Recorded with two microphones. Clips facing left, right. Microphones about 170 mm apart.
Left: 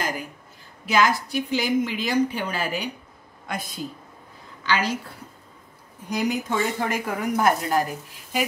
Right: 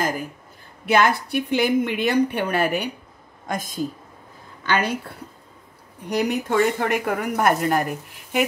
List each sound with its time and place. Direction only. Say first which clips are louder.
0.8 s speech: right 2 dB; 60° right (ahead or behind)
3.4 s a woman's voice: right 5 dB; 45° right (ahead or behind)
6.0 s speech: right 3 dB; 65° right (ahead or behind)